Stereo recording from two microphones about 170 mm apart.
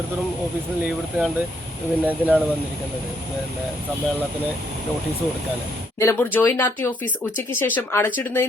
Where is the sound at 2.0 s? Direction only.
10° right (ahead or behind).